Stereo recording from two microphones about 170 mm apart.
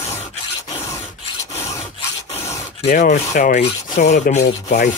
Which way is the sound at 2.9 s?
50° left (ahead or behind).